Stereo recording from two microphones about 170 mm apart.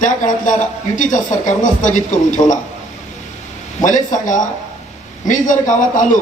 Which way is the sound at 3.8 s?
50° left (ahead or behind).